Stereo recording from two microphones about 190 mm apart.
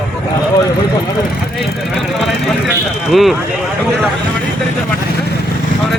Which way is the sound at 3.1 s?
Centre (ahead or behind).